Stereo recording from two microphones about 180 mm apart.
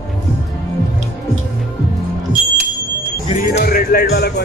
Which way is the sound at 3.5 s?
55° left (ahead or behind).